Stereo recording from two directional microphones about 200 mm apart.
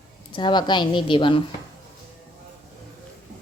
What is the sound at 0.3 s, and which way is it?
Speech, 20° left (ahead or behind).